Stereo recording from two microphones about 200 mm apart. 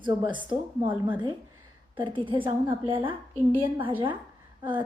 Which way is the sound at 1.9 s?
25° right (ahead or behind).